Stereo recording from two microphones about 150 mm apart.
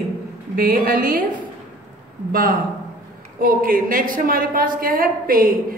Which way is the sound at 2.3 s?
75° right (ahead or behind).